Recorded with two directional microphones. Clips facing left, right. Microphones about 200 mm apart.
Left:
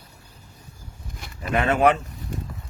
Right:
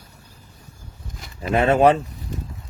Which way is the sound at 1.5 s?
30° right (ahead or behind).